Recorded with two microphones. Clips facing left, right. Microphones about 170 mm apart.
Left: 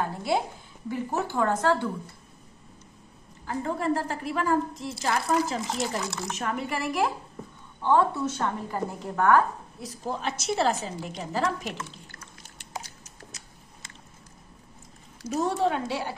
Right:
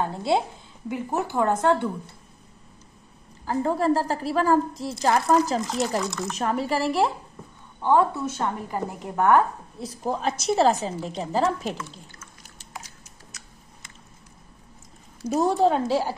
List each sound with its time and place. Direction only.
0.0 s a woman's voice: 25° right (ahead or behind)
3.4 s a woman's voice: 35° right (ahead or behind)
6.0 s speech: centre (ahead or behind)
6.3 s a woman's voice: 35° right (ahead or behind)
7.8 s a woman's voice: 15° right (ahead or behind)
9.8 s a woman's voice: 35° right (ahead or behind)
11.7 s drip: 30° left (ahead or behind)
15.2 s a woman's voice: 35° right (ahead or behind)